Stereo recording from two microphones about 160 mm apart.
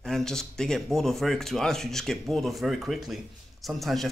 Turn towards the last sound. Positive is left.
turn(degrees=0)  # may be behind; listen again after turning